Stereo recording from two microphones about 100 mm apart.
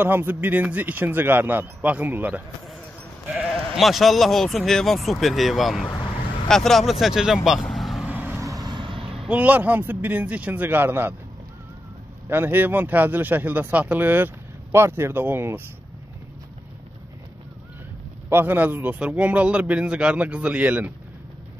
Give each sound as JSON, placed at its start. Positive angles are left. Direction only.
{"t": 0.0, "sound": "a man's voice", "side_deg": -20}
{"t": 3.4, "sound": "speech", "side_deg": 0}
{"t": 8.1, "sound": "vehicle", "side_deg": -15}
{"t": 8.5, "sound": "vehicle", "side_deg": -50}
{"t": 9.2, "sound": "a man's voice", "side_deg": -15}
{"t": 12.3, "sound": "a man's voice", "side_deg": -20}
{"t": 18.3, "sound": "a man's voice", "side_deg": -20}